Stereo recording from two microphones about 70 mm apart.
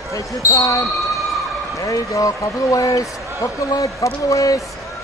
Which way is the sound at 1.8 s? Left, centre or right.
Left.